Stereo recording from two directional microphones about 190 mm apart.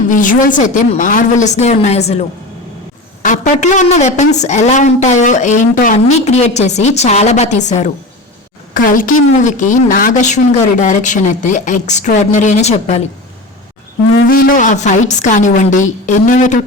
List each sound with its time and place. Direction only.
0.1 s a woman's voice: 45° left (ahead or behind)
3.2 s a woman's voice: 40° left (ahead or behind)
14.3 s a woman's voice: 50° left (ahead or behind)